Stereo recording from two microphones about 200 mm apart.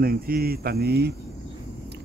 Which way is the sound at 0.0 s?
50° right (ahead or behind).